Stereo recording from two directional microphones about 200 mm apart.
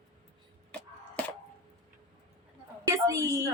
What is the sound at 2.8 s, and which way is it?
Speech, 15° right (ahead or behind).